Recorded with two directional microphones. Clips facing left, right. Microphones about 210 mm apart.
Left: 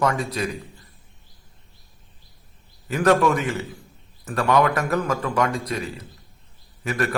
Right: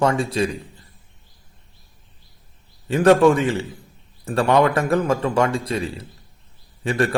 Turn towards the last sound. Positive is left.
turn(degrees=-30)  # may be behind; listen again after turning